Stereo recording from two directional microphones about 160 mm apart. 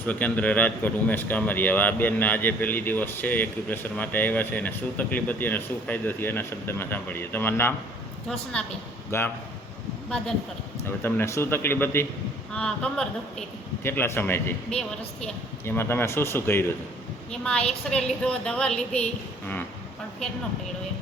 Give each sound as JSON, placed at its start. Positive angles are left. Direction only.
{"t": 0.0, "sound": "a man's voice", "side_deg": 10}
{"t": 9.1, "sound": "a man's voice", "side_deg": 15}
{"t": 10.8, "sound": "a man's voice", "side_deg": 15}